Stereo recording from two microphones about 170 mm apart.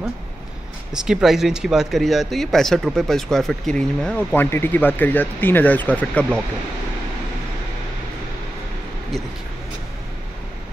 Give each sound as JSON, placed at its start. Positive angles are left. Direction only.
{"t": 0.9, "sound": "speech", "side_deg": -5}